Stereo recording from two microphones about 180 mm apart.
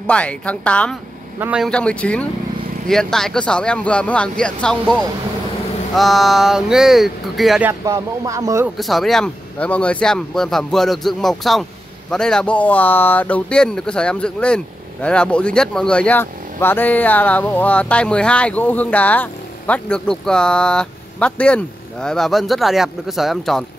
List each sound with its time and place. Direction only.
0.0 s a woman's voice: 5° left (ahead or behind)
1.4 s speech: 5° right (ahead or behind)
1.7 s a woman's voice: 5° left (ahead or behind)
7.8 s speech: 20° right (ahead or behind)
8.7 s speech: centre (ahead or behind)